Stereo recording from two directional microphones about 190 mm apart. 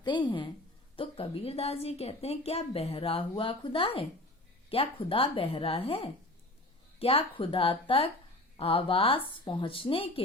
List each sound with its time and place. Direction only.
0.0 s a woman's voice: 25° left (ahead or behind)